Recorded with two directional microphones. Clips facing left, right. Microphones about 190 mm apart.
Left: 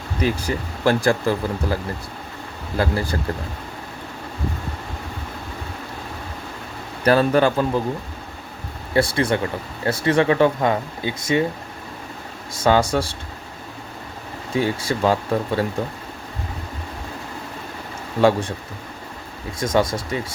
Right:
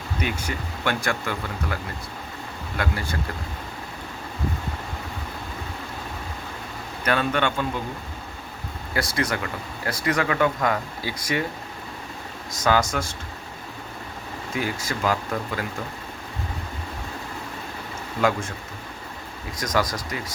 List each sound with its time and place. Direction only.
0.2 s speech: 35° left (ahead or behind)
7.0 s speech: 35° left (ahead or behind)
8.9 s speech: 30° left (ahead or behind)
12.5 s speech: 30° left (ahead or behind)
14.5 s speech: 30° left (ahead or behind)
18.2 s speech: 30° left (ahead or behind)
19.5 s speech: 25° left (ahead or behind)